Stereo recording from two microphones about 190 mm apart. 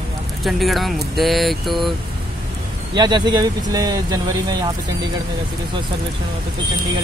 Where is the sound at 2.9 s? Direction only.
25° right (ahead or behind).